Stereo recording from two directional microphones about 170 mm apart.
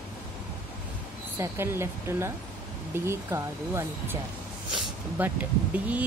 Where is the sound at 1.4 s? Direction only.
15° right (ahead or behind).